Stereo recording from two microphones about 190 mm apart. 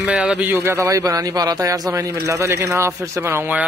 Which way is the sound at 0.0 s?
Centre (ahead or behind).